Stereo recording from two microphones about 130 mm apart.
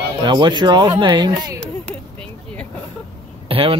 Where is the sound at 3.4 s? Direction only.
45° right (ahead or behind).